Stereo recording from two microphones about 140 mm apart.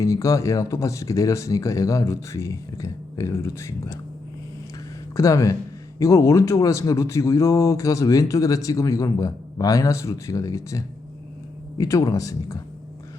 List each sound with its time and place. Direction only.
0.0 s speech: 20° left (ahead or behind)
5.1 s speech: 20° left (ahead or behind)